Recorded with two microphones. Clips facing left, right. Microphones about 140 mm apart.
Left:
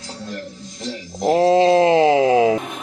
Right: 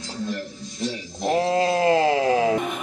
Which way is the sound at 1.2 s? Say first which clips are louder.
Left 7 dB; 25° left (ahead or behind).